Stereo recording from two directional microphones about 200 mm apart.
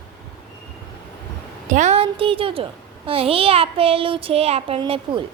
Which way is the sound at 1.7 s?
35° right (ahead or behind).